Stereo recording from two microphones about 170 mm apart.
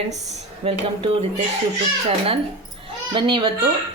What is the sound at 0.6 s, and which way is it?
A child's voice, 35° right (ahead or behind).